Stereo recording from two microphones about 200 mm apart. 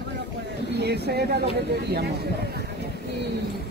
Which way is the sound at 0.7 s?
55° right (ahead or behind).